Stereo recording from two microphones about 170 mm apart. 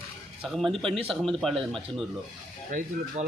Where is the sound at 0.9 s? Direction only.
35° right (ahead or behind).